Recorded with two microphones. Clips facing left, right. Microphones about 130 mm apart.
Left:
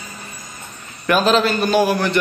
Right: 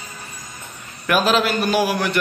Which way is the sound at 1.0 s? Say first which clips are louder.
Left 2 dB; 5° right (ahead or behind).